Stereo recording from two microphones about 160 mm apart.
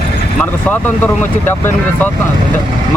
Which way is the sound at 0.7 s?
10° left (ahead or behind).